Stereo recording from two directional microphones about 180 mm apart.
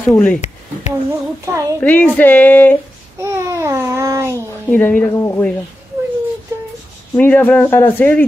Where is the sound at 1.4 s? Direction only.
15° right (ahead or behind).